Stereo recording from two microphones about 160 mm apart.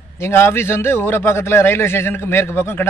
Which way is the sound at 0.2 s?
15° left (ahead or behind).